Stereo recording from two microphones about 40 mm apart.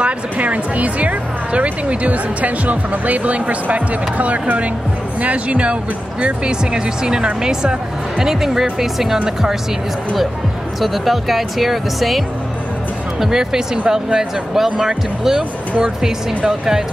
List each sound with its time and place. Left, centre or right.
0.0 s speech: right; by 9.2 s centre
10.8 s speech: centre
13.2 s speech: centre
16.4 s speech: centre